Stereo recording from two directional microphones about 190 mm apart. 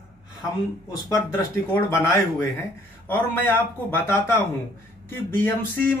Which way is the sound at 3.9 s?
10° left (ahead or behind).